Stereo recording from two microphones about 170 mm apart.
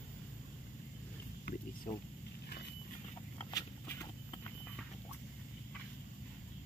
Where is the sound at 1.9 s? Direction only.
30° left (ahead or behind).